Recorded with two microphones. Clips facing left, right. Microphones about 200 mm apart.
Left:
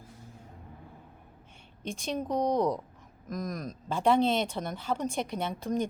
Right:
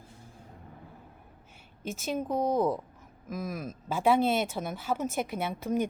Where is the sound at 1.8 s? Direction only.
5° right (ahead or behind).